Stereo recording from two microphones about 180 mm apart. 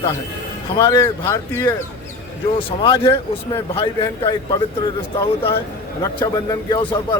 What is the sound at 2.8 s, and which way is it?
Speech, 30° left (ahead or behind).